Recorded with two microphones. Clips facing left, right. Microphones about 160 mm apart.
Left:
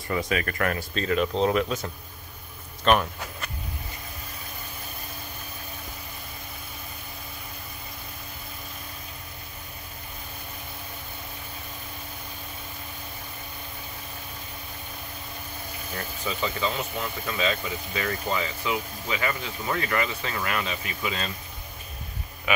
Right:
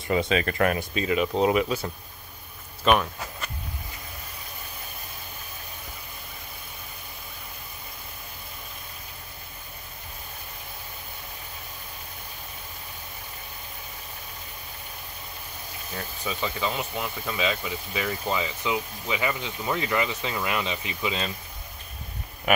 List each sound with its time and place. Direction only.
0.1 s speech: 25° right (ahead or behind)
0.9 s speech: 5° right (ahead or behind)
16.3 s speech: 10° right (ahead or behind)